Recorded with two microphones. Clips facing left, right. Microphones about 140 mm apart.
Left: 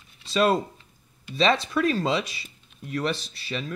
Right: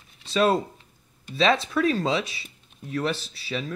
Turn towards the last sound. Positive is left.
turn(degrees=0)  # may be behind; listen again after turning